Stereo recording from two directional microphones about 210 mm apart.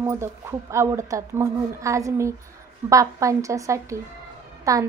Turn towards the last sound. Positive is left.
turn(degrees=-15)  # may be behind; listen again after turning